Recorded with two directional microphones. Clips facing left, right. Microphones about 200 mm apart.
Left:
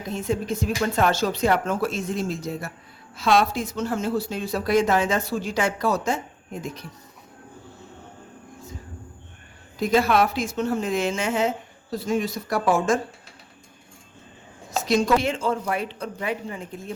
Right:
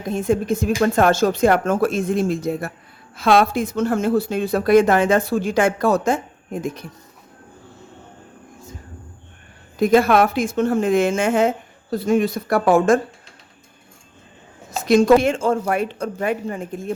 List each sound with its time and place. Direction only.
0.1 s a woman's voice: 50° right (ahead or behind)
9.7 s a woman's voice: 55° right (ahead or behind)
14.8 s a woman's voice: 50° right (ahead or behind)